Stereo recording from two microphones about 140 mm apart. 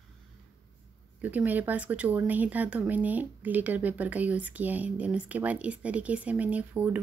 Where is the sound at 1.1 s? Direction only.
10° right (ahead or behind).